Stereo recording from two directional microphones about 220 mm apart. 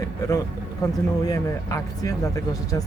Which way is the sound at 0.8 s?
15° left (ahead or behind).